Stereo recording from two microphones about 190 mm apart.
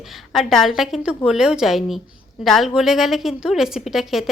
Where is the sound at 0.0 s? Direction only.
Centre (ahead or behind).